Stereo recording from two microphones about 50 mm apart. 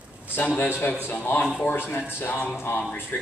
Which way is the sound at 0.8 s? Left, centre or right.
Left.